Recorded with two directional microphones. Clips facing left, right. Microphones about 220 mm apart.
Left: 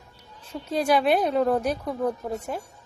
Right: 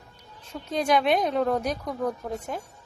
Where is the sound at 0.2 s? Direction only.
5° left (ahead or behind).